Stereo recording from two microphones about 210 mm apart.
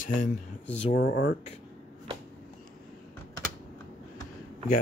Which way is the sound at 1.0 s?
55° left (ahead or behind).